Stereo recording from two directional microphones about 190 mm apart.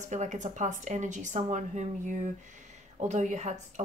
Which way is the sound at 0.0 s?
40° right (ahead or behind).